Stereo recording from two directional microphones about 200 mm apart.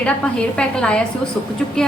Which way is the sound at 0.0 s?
5° left (ahead or behind).